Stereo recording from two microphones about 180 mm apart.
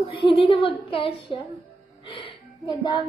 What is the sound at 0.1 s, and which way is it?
A woman's voice, 30° left (ahead or behind).